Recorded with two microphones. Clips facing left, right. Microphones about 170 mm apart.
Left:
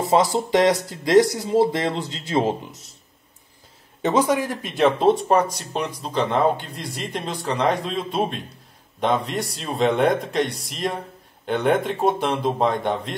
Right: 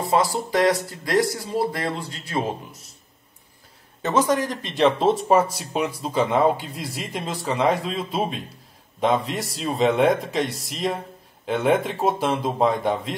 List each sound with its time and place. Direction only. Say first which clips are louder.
0.5 s speech: left 2 dB; 20° left (ahead or behind)
4.0 s speech: left 1 dB; 15° left (ahead or behind)